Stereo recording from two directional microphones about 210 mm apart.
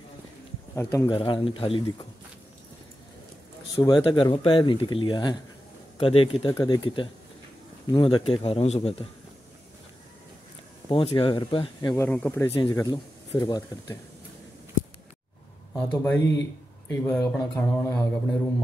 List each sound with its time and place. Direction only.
0.9 s speech: 25° left (ahead or behind)
3.7 s speech: 20° left (ahead or behind)
10.9 s speech: 25° left (ahead or behind); by 12.4 s 10° left (ahead or behind)
12.5 s speech: 25° left (ahead or behind)
15.7 s speech: 5° left (ahead or behind)